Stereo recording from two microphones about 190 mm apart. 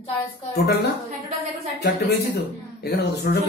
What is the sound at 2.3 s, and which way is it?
Speech, 55° left (ahead or behind).